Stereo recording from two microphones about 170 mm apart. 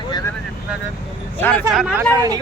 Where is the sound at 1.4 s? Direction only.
10° left (ahead or behind).